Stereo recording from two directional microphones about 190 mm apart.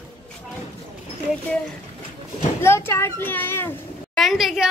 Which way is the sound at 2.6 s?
15° left (ahead or behind).